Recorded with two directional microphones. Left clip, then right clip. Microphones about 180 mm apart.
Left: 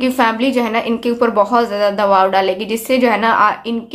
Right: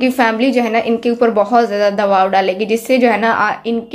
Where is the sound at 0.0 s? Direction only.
10° right (ahead or behind).